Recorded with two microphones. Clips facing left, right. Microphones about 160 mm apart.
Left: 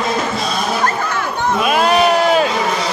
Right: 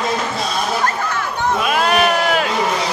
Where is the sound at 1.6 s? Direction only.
20° left (ahead or behind).